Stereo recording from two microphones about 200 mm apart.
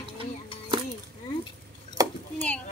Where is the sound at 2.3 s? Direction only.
5° left (ahead or behind).